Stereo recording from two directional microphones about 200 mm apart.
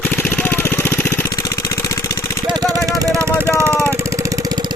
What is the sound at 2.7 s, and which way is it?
Vehicle, 15° right (ahead or behind).